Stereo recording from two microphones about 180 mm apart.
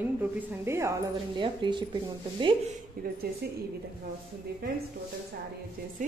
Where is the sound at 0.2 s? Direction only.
10° right (ahead or behind).